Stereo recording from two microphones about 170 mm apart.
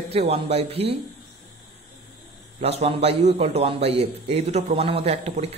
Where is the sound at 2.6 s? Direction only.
35° right (ahead or behind).